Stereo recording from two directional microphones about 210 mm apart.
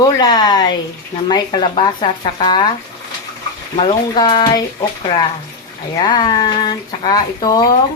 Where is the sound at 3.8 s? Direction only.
20° left (ahead or behind).